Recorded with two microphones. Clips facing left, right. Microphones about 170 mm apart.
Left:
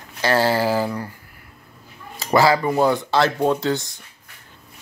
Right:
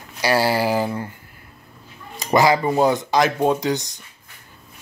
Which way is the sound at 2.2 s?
20° right (ahead or behind).